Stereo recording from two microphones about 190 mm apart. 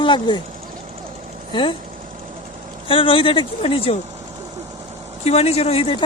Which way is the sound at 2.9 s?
30° left (ahead or behind).